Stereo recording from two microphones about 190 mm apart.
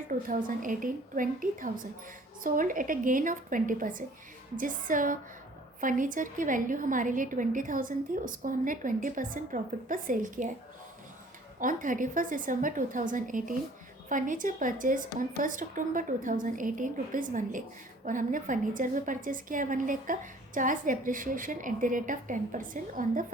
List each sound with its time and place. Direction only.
0.1 s a woman's voice: 45° right (ahead or behind)
11.6 s a woman's voice: 45° right (ahead or behind)